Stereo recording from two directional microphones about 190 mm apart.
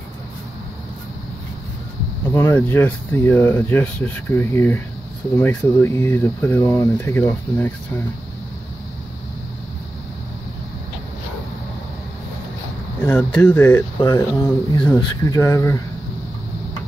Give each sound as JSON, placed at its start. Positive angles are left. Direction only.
{"t": 2.3, "sound": "speech", "side_deg": 10}
{"t": 13.0, "sound": "speech", "side_deg": 10}